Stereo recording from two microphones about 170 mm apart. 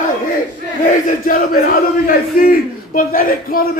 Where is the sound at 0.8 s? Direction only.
55° left (ahead or behind).